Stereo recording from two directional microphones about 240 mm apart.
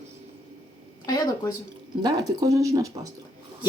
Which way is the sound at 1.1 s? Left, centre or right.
Centre.